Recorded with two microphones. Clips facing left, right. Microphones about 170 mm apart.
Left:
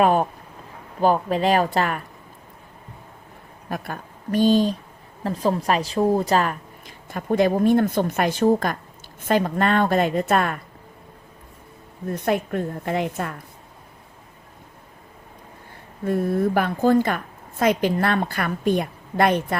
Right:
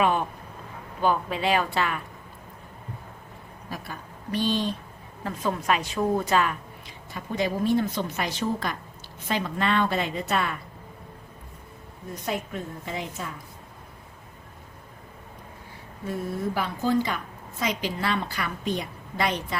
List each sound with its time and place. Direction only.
0.0 s speech: 40° left (ahead or behind)
3.7 s a woman's voice: 55° left (ahead or behind)
12.1 s a woman's voice: 60° left (ahead or behind)
16.0 s a woman's voice: 55° left (ahead or behind)